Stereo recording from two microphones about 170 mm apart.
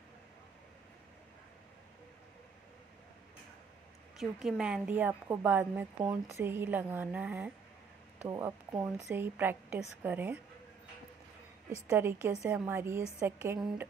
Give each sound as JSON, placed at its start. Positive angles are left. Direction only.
{"t": 4.2, "sound": "a woman's voice", "side_deg": -5}
{"t": 11.9, "sound": "a woman's voice", "side_deg": -15}